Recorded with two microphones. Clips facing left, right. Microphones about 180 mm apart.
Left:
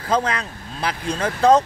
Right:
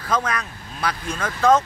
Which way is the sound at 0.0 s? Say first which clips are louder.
Left 3 dB; 30° left (ahead or behind).